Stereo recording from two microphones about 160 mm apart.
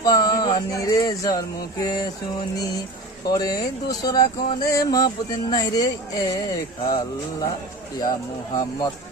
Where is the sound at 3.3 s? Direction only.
25° left (ahead or behind).